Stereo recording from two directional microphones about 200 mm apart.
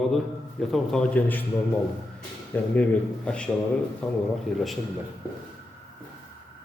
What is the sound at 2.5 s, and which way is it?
A man's voice, 10° left (ahead or behind).